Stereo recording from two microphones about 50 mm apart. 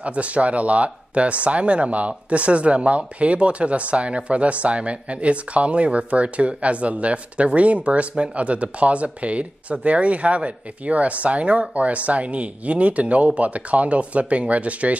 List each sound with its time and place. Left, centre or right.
0.0 s speech: right